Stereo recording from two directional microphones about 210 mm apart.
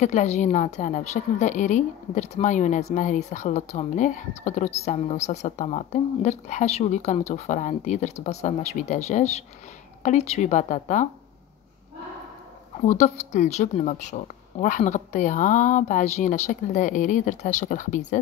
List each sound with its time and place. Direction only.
0.0 s a woman's voice: 35° left (ahead or behind)
12.8 s a woman's voice: 35° left (ahead or behind)